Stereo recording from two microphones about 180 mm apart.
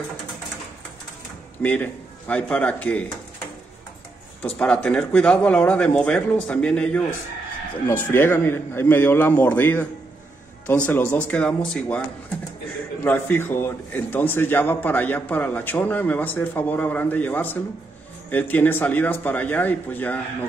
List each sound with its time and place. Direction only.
1.6 s a man's voice: 10° left (ahead or behind)
4.6 s a man's voice: 5° left (ahead or behind)
8.1 s a man's voice: 10° left (ahead or behind)
10.9 s a man's voice: 10° left (ahead or behind)
13.0 s a man's voice: 10° left (ahead or behind)